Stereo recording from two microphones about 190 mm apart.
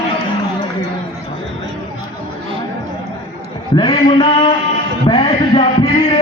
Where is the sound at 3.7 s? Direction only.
25° left (ahead or behind).